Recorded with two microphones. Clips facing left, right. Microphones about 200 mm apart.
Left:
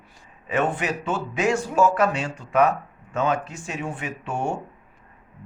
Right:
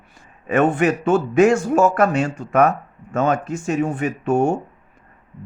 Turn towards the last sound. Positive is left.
turn(degrees=-45)  # may be behind; listen again after turning